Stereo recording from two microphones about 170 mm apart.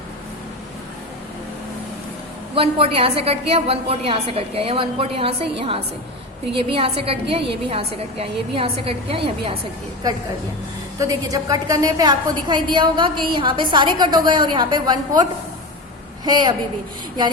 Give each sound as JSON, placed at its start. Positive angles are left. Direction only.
{"t": 2.6, "sound": "a woman's voice", "side_deg": -35}
{"t": 11.0, "sound": "a woman's voice", "side_deg": -20}